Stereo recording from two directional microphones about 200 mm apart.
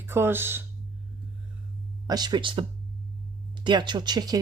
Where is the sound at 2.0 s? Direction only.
20° right (ahead or behind).